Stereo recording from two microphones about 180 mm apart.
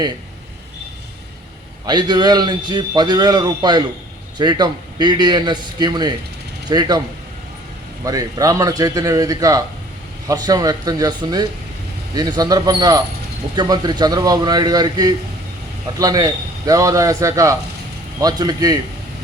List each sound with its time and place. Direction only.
1.9 s speech: 25° right (ahead or behind)
8.0 s speech: 20° right (ahead or behind)